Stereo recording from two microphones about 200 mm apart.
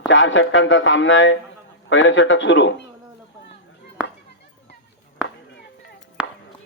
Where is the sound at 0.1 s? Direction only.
75° left (ahead or behind).